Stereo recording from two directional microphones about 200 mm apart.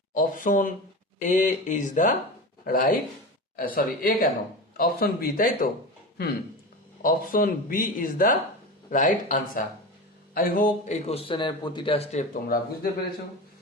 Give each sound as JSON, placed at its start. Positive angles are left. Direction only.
{"t": 0.1, "sound": "speech", "side_deg": 45}
{"t": 7.0, "sound": "a man's voice", "side_deg": 45}
{"t": 12.3, "sound": "speech", "side_deg": 45}